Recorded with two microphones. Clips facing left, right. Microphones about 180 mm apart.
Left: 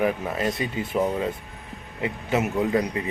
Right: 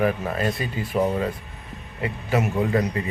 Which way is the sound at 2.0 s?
20° left (ahead or behind).